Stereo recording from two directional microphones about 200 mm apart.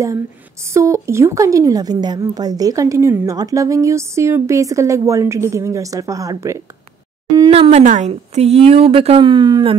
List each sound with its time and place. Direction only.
0.7 s speech: 15° right (ahead or behind)